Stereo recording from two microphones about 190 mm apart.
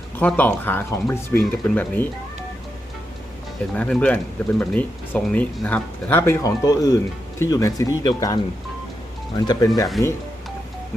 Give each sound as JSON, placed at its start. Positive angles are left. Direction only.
{"t": 0.2, "sound": "speech", "side_deg": 10}
{"t": 3.8, "sound": "speech", "side_deg": 5}